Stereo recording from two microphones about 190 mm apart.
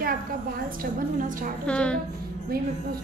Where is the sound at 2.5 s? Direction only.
50° right (ahead or behind).